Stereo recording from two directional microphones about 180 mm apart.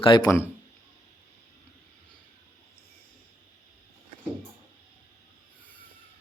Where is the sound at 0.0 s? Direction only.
25° left (ahead or behind).